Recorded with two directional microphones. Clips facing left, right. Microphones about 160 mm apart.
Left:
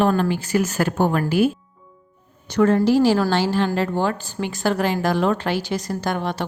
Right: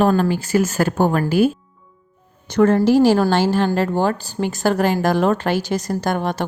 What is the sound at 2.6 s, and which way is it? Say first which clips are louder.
Speech: right 2 dB; 50° right (ahead or behind).